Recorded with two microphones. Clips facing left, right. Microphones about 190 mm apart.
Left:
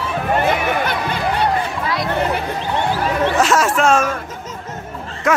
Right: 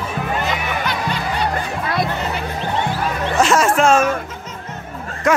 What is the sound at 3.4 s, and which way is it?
Music, centre (ahead or behind).